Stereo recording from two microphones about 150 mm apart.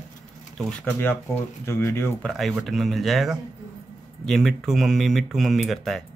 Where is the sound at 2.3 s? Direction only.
Centre (ahead or behind).